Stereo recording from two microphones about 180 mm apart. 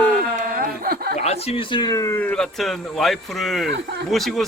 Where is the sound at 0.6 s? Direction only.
55° right (ahead or behind).